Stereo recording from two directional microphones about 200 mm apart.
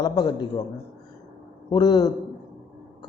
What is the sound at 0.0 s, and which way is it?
Speech, 20° left (ahead or behind).